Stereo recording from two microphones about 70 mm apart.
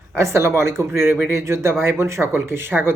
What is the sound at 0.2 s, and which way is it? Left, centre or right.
Speech, right.